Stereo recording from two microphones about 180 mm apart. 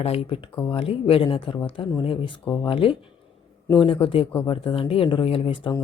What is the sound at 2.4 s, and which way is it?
Speech, 15° left (ahead or behind).